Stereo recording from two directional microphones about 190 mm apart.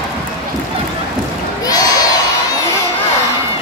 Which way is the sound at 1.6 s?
20° left (ahead or behind).